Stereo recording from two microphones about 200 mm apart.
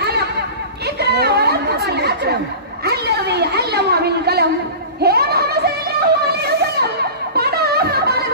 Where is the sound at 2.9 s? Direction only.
55° right (ahead or behind).